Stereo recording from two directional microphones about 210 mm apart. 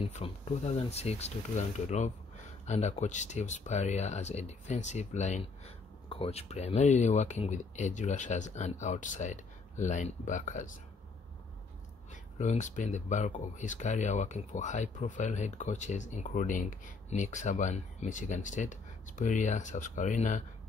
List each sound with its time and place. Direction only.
0.0 s speech: 30° left (ahead or behind)
12.1 s speech: 35° left (ahead or behind)